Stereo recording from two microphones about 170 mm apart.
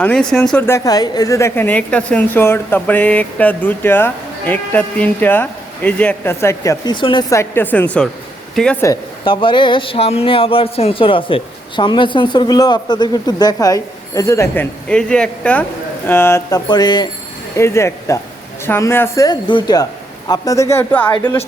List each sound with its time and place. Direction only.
0.0 s a woman's voice: 5° left (ahead or behind)
9.2 s a woman's voice: 30° left (ahead or behind); by 16.6 s 15° left (ahead or behind)
16.6 s a woman's voice: 25° left (ahead or behind)